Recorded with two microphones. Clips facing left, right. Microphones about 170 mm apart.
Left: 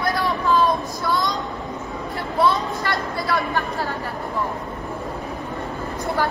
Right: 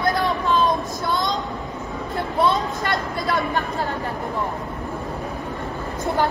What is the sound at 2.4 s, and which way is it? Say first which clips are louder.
A woman's voice: left 1 dB; 20° right (ahead or behind).